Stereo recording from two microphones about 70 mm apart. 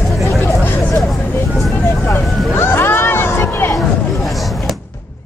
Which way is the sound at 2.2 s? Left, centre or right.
Centre.